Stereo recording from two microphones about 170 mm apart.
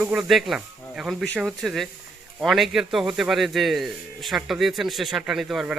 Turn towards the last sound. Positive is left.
turn(degrees=-5)  # may be behind; listen again after turning